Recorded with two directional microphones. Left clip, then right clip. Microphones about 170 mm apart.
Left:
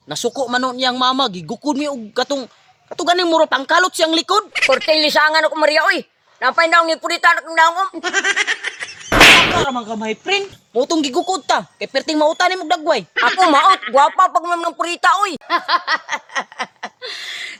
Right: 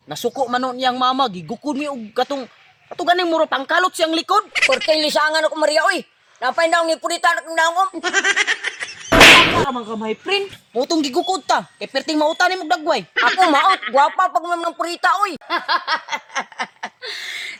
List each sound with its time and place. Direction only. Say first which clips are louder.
0.1 s a man's voice: left 1 dB; 40° left (ahead or behind)
4.5 s speech: left 2 dB; 5° left (ahead or behind)
9.9 s speech: left 2 dB; 55° left (ahead or behind)
10.8 s a man's voice: left 1 dB; 30° left (ahead or behind)
13.1 s speech: left 1 dB; centre (ahead or behind)
14.4 s a man's voice: left 2 dB; 35° left (ahead or behind)
15.9 s a sound: left 2 dB; 20° left (ahead or behind)